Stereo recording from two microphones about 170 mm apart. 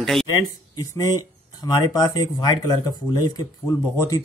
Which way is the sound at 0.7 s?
20° left (ahead or behind).